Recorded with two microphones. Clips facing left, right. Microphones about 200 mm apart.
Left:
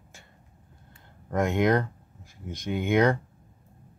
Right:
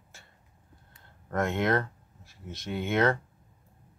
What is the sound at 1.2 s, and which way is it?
Speech, 15° left (ahead or behind).